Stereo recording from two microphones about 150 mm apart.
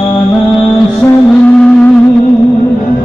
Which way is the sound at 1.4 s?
10° left (ahead or behind).